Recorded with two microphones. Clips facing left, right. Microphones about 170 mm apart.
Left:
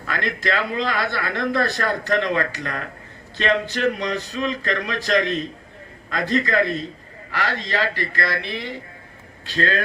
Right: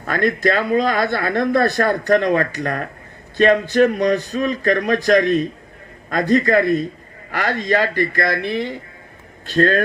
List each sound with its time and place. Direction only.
0.0 s speech: 50° right (ahead or behind)